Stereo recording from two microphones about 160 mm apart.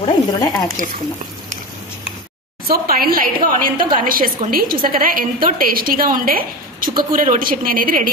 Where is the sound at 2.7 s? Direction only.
65° right (ahead or behind).